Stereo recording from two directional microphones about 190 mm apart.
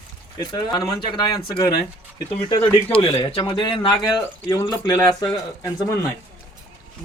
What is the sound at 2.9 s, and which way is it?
Speech, 30° left (ahead or behind).